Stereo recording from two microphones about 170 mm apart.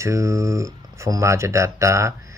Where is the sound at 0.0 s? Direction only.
15° right (ahead or behind).